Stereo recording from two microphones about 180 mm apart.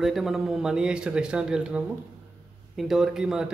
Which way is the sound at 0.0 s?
Centre (ahead or behind).